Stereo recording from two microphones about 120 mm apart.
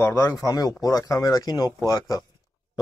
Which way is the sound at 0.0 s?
30° left (ahead or behind).